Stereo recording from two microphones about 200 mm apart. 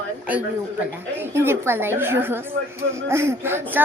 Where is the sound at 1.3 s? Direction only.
10° right (ahead or behind).